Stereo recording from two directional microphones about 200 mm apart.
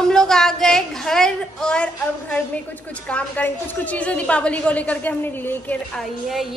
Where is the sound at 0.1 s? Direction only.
5° left (ahead or behind).